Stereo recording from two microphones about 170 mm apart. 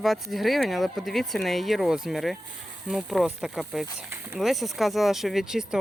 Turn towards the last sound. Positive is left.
turn(degrees=-5)  # may be behind; listen again after turning